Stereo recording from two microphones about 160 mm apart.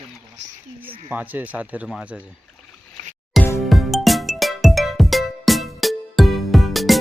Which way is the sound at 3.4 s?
Centre (ahead or behind).